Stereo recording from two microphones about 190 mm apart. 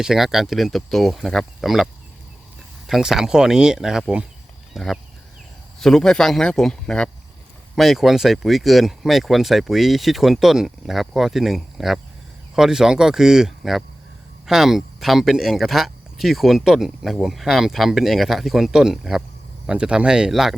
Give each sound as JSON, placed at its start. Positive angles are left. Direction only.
{"t": 0.0, "sound": "speech", "side_deg": 0}